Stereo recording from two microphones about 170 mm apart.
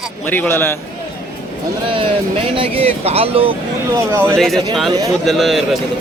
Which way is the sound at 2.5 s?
35° right (ahead or behind).